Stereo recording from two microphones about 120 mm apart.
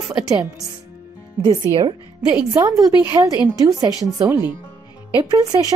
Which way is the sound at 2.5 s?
30° right (ahead or behind).